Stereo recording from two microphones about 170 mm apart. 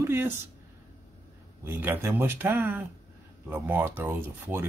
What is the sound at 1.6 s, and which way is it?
Speech, 10° right (ahead or behind).